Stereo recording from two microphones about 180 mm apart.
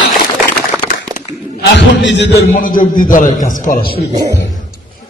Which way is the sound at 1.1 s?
75° left (ahead or behind).